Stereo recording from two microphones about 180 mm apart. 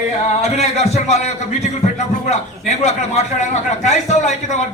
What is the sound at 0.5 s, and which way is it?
A man's voice, 40° left (ahead or behind).